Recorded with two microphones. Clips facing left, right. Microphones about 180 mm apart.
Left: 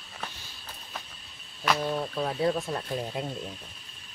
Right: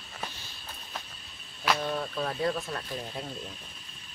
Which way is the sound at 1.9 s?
20° left (ahead or behind).